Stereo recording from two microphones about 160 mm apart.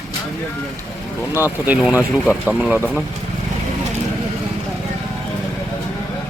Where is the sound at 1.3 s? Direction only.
10° right (ahead or behind).